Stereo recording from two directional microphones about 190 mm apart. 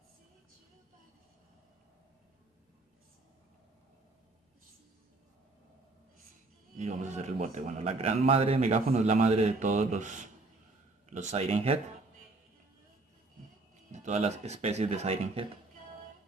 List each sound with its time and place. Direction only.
6.8 s a man's voice: 35° right (ahead or behind)
13.9 s a man's voice: 35° right (ahead or behind)